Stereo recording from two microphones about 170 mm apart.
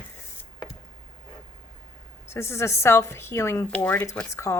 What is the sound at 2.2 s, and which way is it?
Speech, 15° left (ahead or behind).